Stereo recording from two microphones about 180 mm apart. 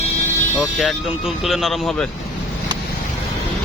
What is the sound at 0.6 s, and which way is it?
Speech, centre (ahead or behind).